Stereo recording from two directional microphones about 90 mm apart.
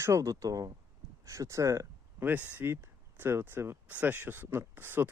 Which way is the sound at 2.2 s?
20° right (ahead or behind).